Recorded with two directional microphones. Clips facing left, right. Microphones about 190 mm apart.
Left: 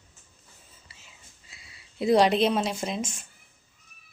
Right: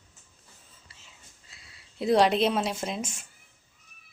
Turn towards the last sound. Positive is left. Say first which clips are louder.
# left 2 dB
turn(degrees=-5)  # may be behind; listen again after turning